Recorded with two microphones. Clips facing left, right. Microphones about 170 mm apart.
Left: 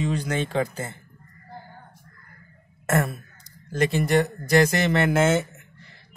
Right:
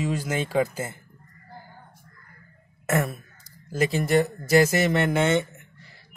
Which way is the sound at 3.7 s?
Centre (ahead or behind).